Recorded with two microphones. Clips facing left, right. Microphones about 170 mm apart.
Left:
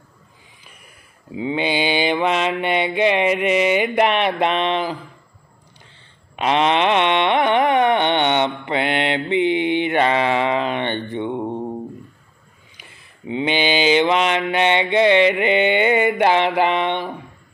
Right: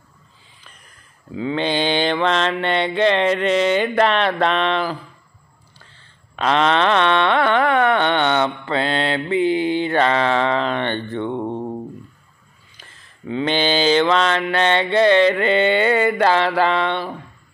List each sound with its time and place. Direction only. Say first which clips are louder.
1.3 s mantra: even; 15° left (ahead or behind)
6.3 s carnatic music: even; 15° left (ahead or behind)
12.7 s mantra: left 1 dB; 10° left (ahead or behind)